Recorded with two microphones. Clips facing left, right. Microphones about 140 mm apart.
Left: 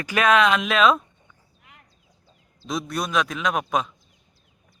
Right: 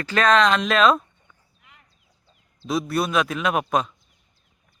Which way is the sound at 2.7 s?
5° right (ahead or behind).